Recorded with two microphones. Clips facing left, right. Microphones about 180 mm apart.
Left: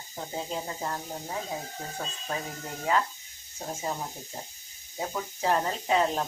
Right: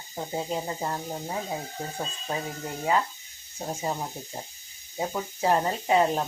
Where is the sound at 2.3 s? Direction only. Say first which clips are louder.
Right 2 dB; 20° right (ahead or behind).